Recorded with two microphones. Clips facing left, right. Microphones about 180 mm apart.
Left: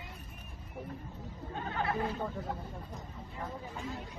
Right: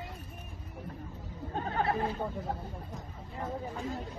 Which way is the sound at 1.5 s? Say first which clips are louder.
Right 3 dB; 40° right (ahead or behind).